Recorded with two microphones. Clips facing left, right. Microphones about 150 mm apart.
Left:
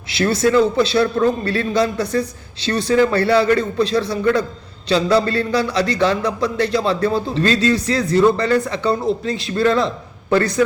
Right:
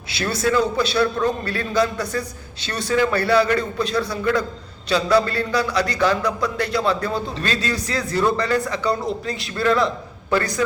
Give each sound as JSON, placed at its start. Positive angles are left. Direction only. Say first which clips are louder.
{"t": 0.5, "sound": "speech", "louder": "left 5 dB", "side_deg": 25}